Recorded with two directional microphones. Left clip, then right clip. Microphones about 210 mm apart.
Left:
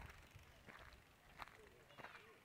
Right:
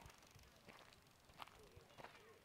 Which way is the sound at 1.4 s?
10° left (ahead or behind).